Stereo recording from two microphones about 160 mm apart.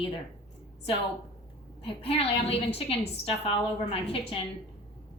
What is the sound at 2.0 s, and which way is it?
A woman's voice, 35° left (ahead or behind).